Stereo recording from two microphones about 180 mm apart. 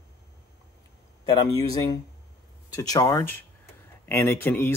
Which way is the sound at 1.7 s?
20° left (ahead or behind).